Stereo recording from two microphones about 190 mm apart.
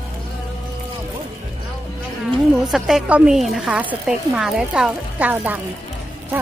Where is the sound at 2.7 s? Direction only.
Centre (ahead or behind).